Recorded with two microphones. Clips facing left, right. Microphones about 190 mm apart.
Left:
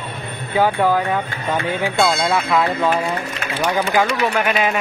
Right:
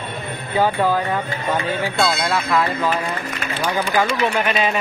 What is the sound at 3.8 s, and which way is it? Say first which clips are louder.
Speech: left 1 dB; 15° left (ahead or behind).